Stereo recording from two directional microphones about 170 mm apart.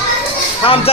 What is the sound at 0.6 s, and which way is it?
Speech, 35° left (ahead or behind).